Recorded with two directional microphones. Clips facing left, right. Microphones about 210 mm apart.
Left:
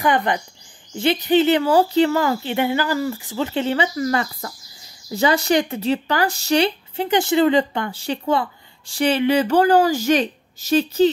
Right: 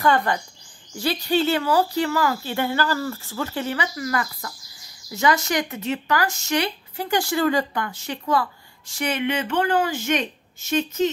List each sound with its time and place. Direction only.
0.0 s speech: 20° left (ahead or behind); by 11.1 s 35° left (ahead or behind)